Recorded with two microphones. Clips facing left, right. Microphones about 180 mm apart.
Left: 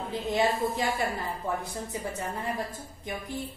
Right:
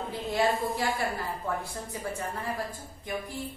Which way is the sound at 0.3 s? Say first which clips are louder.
Left 1 dB; 20° left (ahead or behind).